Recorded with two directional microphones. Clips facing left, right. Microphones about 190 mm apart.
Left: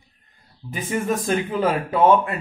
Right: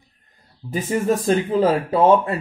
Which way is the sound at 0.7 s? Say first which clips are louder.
Right 4 dB; 30° right (ahead or behind).